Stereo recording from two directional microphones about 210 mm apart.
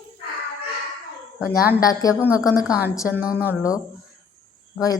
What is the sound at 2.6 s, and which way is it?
Speech, 5° right (ahead or behind).